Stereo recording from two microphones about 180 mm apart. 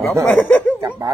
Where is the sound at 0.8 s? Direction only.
15° right (ahead or behind).